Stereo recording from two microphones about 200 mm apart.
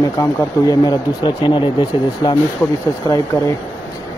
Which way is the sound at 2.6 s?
5° left (ahead or behind).